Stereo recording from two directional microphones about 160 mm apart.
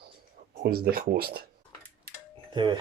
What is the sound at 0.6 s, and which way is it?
Speech, 70° right (ahead or behind).